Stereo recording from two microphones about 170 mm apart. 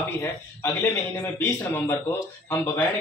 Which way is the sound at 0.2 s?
15° left (ahead or behind).